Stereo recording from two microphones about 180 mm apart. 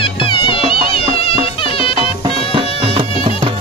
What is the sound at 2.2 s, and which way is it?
Music, 30° right (ahead or behind).